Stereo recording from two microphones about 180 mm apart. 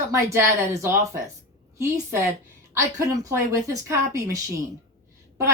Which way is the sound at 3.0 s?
15° right (ahead or behind).